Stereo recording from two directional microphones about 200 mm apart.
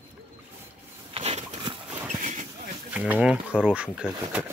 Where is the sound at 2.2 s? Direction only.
35° right (ahead or behind).